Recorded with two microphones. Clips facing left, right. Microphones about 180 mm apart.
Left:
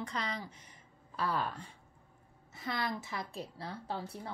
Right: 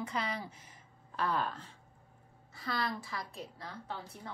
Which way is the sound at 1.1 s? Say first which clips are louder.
Right 1 dB; 10° left (ahead or behind).